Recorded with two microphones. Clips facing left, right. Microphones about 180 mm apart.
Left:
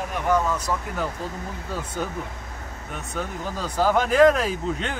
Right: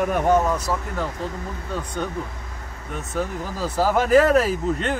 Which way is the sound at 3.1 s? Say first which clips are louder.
Right 3 dB; 5° right (ahead or behind).